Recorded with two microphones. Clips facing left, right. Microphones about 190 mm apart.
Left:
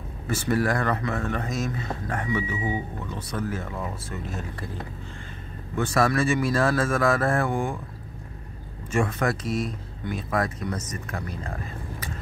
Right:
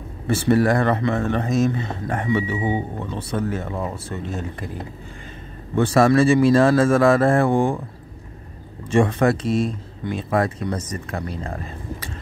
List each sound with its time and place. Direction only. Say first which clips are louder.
0.3 s speech: right 7 dB; 30° right (ahead or behind)
5.8 s speech: right 7 dB; 30° right (ahead or behind)
8.9 s speech: right 7 dB; 30° right (ahead or behind)